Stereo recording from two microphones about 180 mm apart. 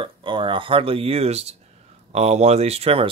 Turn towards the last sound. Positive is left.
turn(degrees=-35)  # may be behind; listen again after turning